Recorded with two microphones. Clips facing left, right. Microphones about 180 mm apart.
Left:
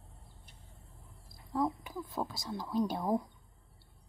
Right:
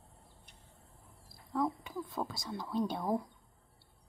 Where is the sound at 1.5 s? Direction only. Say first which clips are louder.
Left 1 dB; 5° left (ahead or behind).